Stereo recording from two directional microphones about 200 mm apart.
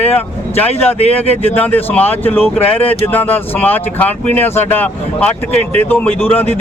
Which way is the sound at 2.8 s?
30° left (ahead or behind).